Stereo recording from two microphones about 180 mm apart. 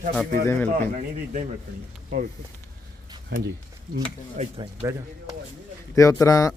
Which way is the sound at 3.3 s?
65° right (ahead or behind).